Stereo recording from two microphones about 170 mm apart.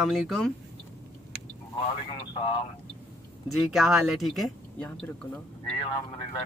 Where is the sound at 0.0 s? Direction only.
Centre (ahead or behind).